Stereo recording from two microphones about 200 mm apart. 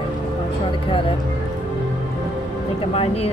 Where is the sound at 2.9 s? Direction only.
30° left (ahead or behind).